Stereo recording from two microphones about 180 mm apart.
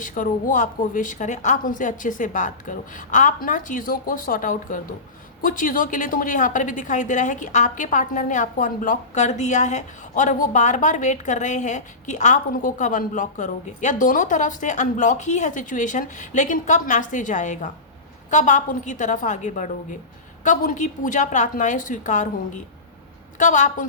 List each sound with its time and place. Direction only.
0.0 s a woman's voice: 45° left (ahead or behind)